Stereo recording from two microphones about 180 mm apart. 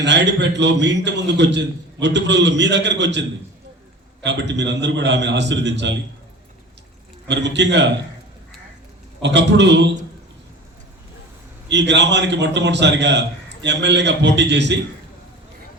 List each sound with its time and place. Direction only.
0.0 s a man's voice: 75° right (ahead or behind)
7.3 s a man's voice: 75° right (ahead or behind)
9.2 s a man's voice: 75° right (ahead or behind)
11.7 s a man's voice: 75° right (ahead or behind)